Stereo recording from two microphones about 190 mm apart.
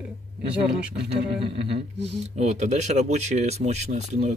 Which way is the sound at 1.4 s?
30° right (ahead or behind).